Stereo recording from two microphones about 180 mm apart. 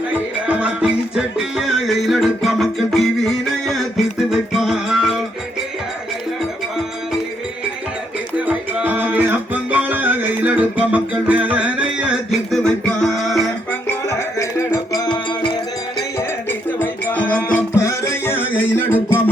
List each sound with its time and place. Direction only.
0.1 s music: 5° right (ahead or behind)
8.4 s music: 10° right (ahead or behind)
14.3 s music: 20° left (ahead or behind)
16.1 s music: 10° left (ahead or behind)